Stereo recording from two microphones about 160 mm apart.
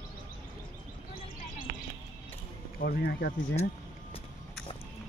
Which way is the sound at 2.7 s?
75° left (ahead or behind).